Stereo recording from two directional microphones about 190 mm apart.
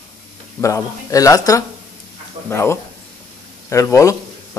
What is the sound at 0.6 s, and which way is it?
Speech, 15° left (ahead or behind).